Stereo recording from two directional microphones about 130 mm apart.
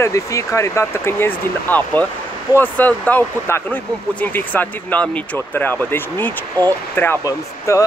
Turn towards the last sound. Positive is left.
turn(degrees=20)  # may be behind; listen again after turning